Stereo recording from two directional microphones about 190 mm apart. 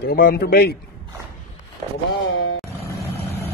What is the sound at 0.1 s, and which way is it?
Speech, 55° left (ahead or behind).